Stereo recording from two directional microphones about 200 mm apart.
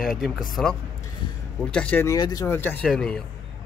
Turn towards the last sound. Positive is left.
turn(degrees=0)  # may be behind; listen again after turning